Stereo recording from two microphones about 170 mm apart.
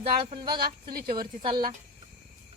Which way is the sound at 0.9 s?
60° right (ahead or behind).